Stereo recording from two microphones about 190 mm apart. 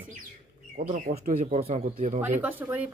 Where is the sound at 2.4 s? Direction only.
10° right (ahead or behind).